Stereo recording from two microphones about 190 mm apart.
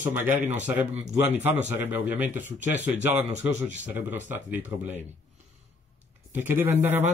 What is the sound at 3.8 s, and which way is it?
A man's voice, 10° right (ahead or behind).